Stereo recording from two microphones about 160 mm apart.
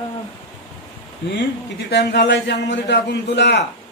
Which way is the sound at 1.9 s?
90° left.